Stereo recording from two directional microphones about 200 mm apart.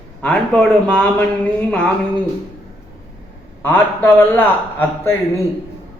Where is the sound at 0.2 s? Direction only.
5° left (ahead or behind).